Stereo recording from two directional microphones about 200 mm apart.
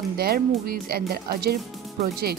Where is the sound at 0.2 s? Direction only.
50° right (ahead or behind).